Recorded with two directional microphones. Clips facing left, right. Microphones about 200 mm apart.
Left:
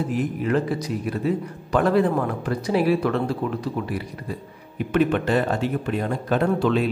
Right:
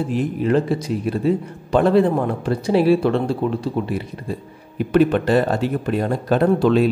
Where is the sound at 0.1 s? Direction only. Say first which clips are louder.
Right 6 dB; 30° right (ahead or behind).